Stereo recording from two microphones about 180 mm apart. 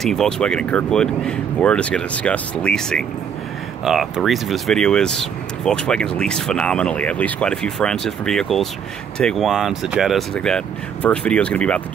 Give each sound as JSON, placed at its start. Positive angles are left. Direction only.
{"t": 0.0, "sound": "speech", "side_deg": 0}